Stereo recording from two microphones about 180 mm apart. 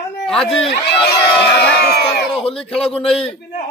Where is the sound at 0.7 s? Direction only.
65° left (ahead or behind).